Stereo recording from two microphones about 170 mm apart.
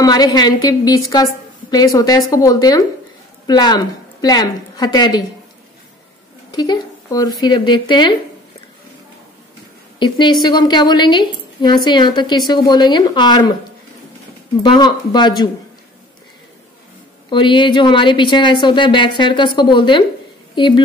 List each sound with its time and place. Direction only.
0.0 s a woman's voice: 25° left (ahead or behind)
6.5 s a woman's voice: 25° left (ahead or behind)
9.9 s a woman's voice: 25° left (ahead or behind)
14.6 s a woman's voice: 25° left (ahead or behind)
17.3 s a woman's voice: 30° left (ahead or behind)